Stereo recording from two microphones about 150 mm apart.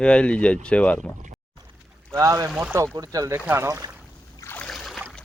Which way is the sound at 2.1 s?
20° right (ahead or behind).